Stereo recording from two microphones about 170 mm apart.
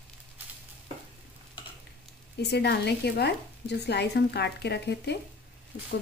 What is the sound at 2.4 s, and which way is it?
Speech, 75° left (ahead or behind).